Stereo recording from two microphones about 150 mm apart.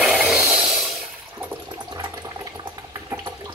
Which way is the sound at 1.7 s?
25° right (ahead or behind).